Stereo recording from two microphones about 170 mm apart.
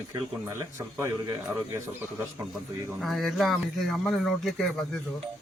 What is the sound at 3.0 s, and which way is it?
Speech, centre (ahead or behind).